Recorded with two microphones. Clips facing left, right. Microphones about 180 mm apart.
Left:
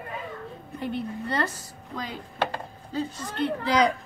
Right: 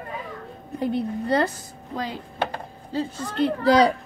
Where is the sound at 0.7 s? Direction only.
35° right (ahead or behind).